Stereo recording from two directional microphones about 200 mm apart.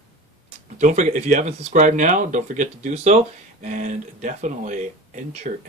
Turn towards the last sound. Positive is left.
turn(degrees=-40)  # may be behind; listen again after turning